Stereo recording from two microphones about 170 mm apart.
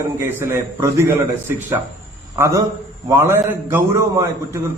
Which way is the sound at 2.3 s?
15° right (ahead or behind).